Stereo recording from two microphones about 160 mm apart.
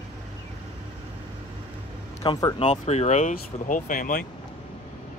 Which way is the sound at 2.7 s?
45° left (ahead or behind).